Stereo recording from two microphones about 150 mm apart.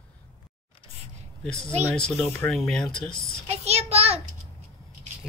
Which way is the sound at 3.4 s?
45° right (ahead or behind).